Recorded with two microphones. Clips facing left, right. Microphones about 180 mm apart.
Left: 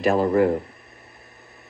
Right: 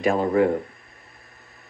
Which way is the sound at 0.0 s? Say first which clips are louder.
Left 1 dB; 5° left (ahead or behind).